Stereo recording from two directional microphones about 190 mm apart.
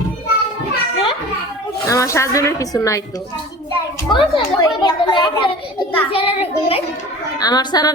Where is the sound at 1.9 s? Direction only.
15° left (ahead or behind).